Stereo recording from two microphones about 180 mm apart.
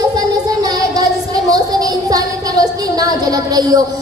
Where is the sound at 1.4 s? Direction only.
20° right (ahead or behind).